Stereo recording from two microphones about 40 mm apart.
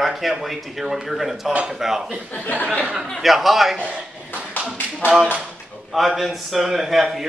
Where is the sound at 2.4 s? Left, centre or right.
Left.